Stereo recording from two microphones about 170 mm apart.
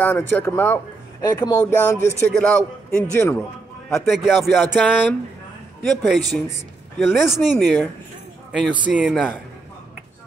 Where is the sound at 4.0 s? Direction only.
Centre (ahead or behind).